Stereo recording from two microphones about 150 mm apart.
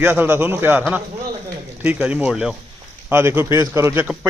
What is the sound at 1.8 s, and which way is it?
Speech, 10° right (ahead or behind).